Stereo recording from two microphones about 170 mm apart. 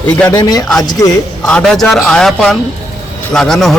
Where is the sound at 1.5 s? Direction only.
5° left (ahead or behind).